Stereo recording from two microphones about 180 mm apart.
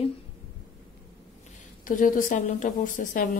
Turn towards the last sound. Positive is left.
turn(degrees=50)  # may be behind; listen again after turning